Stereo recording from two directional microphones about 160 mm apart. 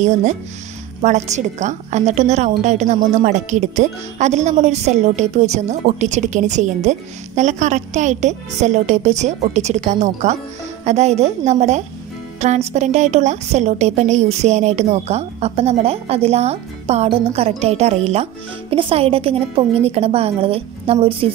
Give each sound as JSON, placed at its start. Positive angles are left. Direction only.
{"t": 0.0, "sound": "a woman's voice", "side_deg": -50}